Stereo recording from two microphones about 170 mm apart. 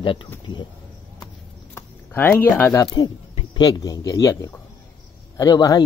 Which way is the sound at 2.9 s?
30° left (ahead or behind).